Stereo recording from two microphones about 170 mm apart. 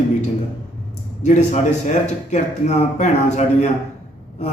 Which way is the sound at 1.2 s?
45° left (ahead or behind).